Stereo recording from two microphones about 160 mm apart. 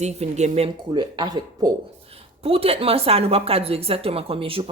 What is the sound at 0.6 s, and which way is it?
Speech, 30° right (ahead or behind).